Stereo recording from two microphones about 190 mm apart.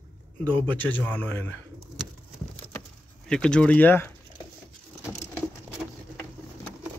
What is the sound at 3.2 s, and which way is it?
Speech, 5° left (ahead or behind).